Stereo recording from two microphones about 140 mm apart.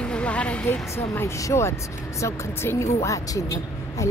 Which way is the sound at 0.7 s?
20° left (ahead or behind).